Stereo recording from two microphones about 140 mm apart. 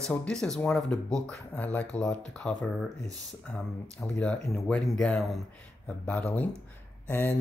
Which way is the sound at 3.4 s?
5° left (ahead or behind).